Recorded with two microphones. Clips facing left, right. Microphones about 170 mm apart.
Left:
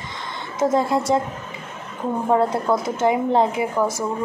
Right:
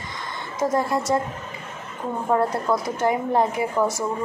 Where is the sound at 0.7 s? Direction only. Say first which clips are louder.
Left 2 dB; 20° left (ahead or behind).